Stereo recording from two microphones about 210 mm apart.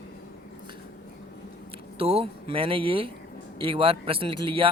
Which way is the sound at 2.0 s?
30° right (ahead or behind).